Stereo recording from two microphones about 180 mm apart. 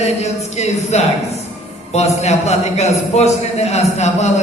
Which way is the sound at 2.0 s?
40° left (ahead or behind).